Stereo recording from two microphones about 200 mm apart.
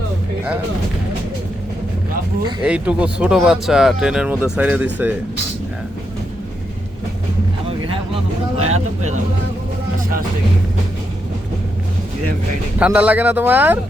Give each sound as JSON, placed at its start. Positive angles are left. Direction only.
{"t": 2.6, "sound": "speech", "side_deg": -5}
{"t": 8.6, "sound": "speech", "side_deg": -35}
{"t": 12.8, "sound": "speech", "side_deg": -5}